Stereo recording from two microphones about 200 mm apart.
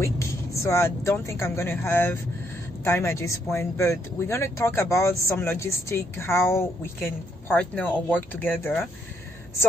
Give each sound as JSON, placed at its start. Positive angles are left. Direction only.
{"t": 0.0, "sound": "speech", "side_deg": 15}